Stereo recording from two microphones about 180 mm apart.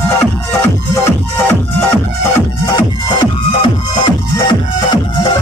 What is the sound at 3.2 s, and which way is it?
Music, 25° left (ahead or behind).